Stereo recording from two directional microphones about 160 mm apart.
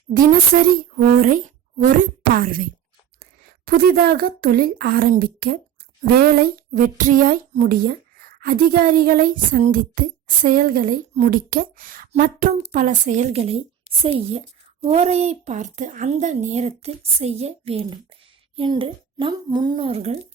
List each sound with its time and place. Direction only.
0.1 s speech: 60° right (ahead or behind)
1.8 s speech: 60° right (ahead or behind)
3.7 s a woman's voice: 65° right (ahead or behind); by 20.1 s 40° right (ahead or behind)